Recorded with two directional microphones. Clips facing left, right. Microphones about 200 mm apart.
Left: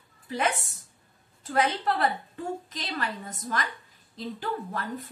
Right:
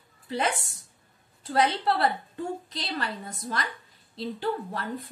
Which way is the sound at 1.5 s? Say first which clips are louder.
Right 1 dB; 30° right (ahead or behind).